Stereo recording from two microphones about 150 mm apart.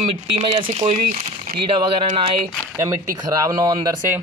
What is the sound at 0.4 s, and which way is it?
Speech, 35° right (ahead or behind).